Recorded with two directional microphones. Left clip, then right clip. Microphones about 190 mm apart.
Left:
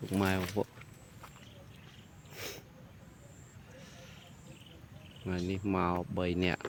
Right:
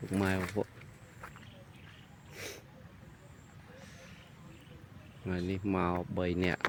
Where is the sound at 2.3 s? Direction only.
10° left (ahead or behind).